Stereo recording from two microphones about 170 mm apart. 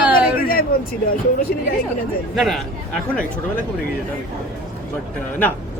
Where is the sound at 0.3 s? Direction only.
60° left (ahead or behind).